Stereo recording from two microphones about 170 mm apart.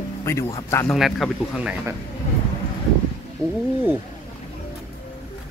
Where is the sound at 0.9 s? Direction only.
Centre (ahead or behind).